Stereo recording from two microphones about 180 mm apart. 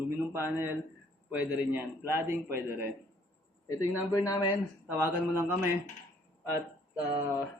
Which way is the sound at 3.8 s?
20° left (ahead or behind).